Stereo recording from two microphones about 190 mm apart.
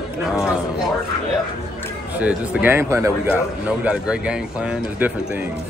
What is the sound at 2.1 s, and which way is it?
A man's voice, 10° right (ahead or behind).